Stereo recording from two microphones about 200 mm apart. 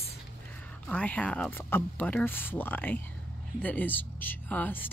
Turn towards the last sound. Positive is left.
turn(degrees=10)  # may be behind; listen again after turning